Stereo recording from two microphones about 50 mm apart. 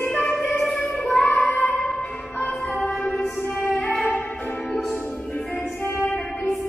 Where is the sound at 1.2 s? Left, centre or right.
Left.